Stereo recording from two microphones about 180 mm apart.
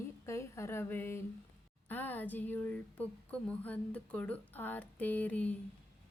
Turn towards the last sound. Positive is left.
turn(degrees=10)  # may be behind; listen again after turning